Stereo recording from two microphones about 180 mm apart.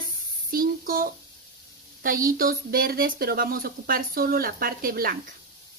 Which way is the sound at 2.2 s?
50° right (ahead or behind).